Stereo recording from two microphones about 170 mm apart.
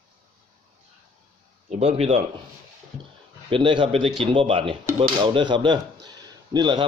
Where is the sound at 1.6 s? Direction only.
40° right (ahead or behind).